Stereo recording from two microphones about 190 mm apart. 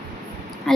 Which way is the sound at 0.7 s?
Centre (ahead or behind).